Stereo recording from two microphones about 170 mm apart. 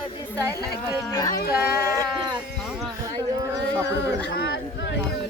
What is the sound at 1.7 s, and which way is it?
Sheep, 20° right (ahead or behind).